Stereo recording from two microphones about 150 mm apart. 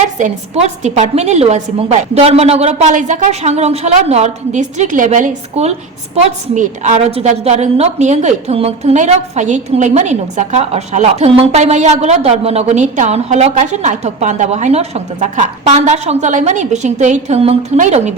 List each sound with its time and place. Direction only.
0.0 s a woman's voice: 45° right (ahead or behind)